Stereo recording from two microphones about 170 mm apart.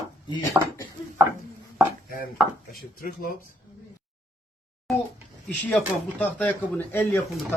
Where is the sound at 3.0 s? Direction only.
55° left (ahead or behind).